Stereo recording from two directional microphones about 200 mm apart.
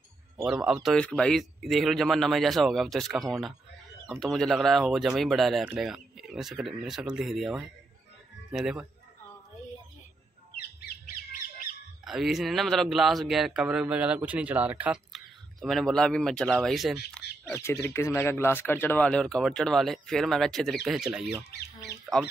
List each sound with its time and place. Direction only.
0.4 s speech: 5° right (ahead or behind)
10.5 s bird: 50° left (ahead or behind)
12.0 s speech: centre (ahead or behind)
17.5 s speech: 15° left (ahead or behind)